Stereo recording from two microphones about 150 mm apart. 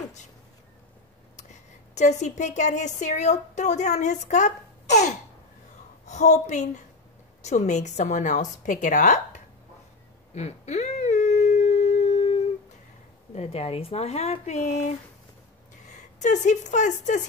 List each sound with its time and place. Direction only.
1.3 s a woman's voice: 50° left (ahead or behind)
10.3 s a sound: 45° left (ahead or behind)
13.3 s a woman's voice: 45° left (ahead or behind)
16.2 s a woman's voice: 55° left (ahead or behind)